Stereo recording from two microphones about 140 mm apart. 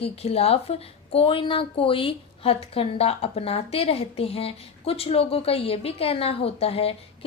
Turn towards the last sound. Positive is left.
turn(degrees=45)  # may be behind; listen again after turning